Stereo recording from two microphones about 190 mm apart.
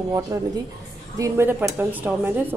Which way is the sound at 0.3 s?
15° right (ahead or behind).